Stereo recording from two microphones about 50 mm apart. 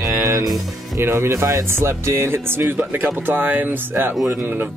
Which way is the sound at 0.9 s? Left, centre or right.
Right.